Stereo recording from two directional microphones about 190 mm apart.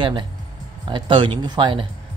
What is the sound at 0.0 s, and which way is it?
Speech, 25° right (ahead or behind).